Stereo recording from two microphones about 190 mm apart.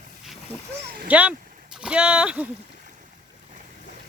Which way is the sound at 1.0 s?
5° right (ahead or behind).